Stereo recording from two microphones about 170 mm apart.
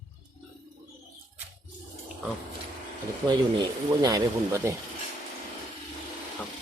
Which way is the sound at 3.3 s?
25° right (ahead or behind).